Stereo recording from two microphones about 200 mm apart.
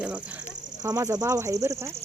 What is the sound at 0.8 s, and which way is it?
Speech, 15° right (ahead or behind).